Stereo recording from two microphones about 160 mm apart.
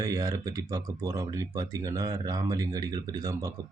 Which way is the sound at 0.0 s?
20° right (ahead or behind).